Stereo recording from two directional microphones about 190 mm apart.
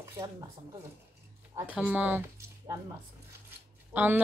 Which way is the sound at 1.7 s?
5° right (ahead or behind).